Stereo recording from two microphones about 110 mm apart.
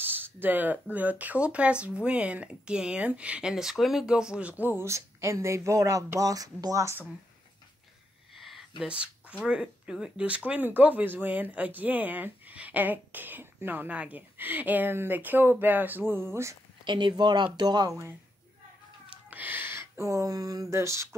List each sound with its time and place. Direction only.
0.0 s speech: 20° right (ahead or behind)
8.4 s a sound: centre (ahead or behind)
9.4 s speech: 10° right (ahead or behind); by 16.5 s 25° right (ahead or behind)
16.8 s speech: 45° right (ahead or behind)
19.3 s speech: 15° right (ahead or behind)